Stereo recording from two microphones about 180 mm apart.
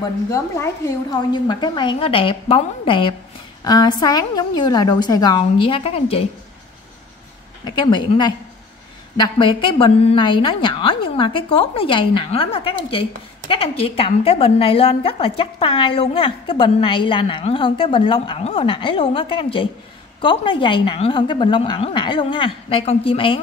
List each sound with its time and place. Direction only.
0.3 s a woman's voice: 15° left (ahead or behind); by 6.2 s 35° left (ahead or behind)
7.6 s a woman's voice: 25° left (ahead or behind)